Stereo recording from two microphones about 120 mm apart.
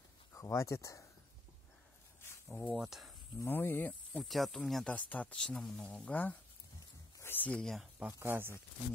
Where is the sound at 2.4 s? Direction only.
10° left (ahead or behind).